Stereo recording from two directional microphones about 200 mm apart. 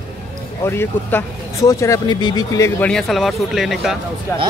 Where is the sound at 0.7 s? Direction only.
10° left (ahead or behind).